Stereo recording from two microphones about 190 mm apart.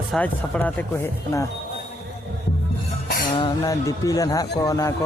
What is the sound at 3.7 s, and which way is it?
Speech, 15° left (ahead or behind).